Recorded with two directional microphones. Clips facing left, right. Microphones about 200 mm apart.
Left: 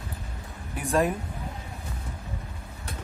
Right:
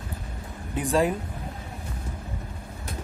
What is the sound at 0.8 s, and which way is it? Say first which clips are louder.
Speech: right 1 dB; 35° right (ahead or behind).